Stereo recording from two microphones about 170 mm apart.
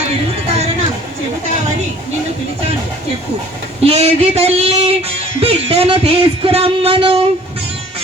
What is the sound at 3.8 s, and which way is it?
Music, 35° right (ahead or behind).